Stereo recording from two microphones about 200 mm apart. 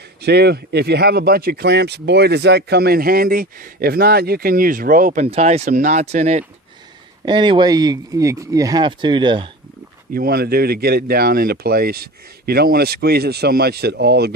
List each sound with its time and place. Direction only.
0.2 s speech: 55° right (ahead or behind)
5.2 s speech: 30° right (ahead or behind)
7.3 s speech: 25° right (ahead or behind)
10.2 s speech: 50° right (ahead or behind)